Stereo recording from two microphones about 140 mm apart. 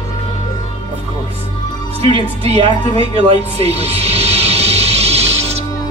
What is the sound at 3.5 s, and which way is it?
Music, 45° right (ahead or behind).